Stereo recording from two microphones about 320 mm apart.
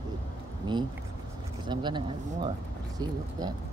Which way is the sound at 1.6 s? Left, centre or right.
Centre.